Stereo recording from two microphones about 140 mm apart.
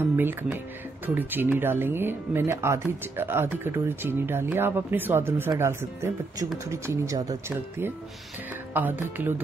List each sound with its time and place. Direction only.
0.0 s speech: 15° right (ahead or behind)